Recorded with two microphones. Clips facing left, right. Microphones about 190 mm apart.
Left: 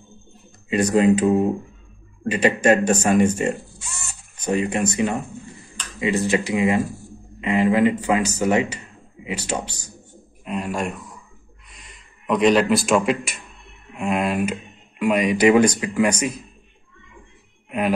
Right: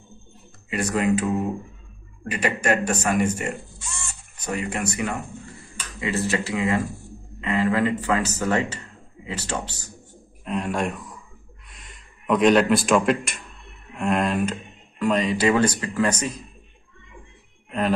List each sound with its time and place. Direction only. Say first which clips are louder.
0.7 s speech: left 6 dB; 20° left (ahead or behind)
10.4 s speech: even; centre (ahead or behind)
17.6 s speech: left 1 dB; 10° left (ahead or behind)